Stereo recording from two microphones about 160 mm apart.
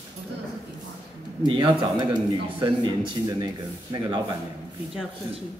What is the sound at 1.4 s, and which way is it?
A man's voice, 30° right (ahead or behind).